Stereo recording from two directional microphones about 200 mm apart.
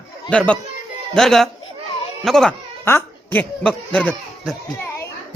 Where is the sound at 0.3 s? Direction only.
5° left (ahead or behind).